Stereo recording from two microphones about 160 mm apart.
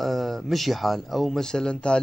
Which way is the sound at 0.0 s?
Centre (ahead or behind).